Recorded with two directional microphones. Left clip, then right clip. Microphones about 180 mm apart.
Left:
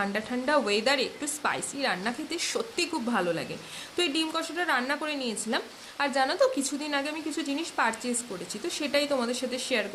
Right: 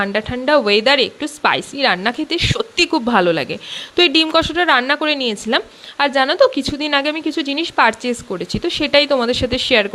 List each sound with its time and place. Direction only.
0.0 s a woman's voice: 45° right (ahead or behind)